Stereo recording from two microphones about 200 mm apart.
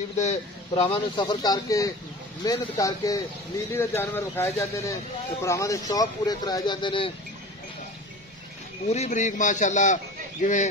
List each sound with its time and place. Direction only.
0.2 s a man's voice: 35° left (ahead or behind)
0.9 s speech: 20° left (ahead or behind)
8.8 s a man's voice: 35° left (ahead or behind)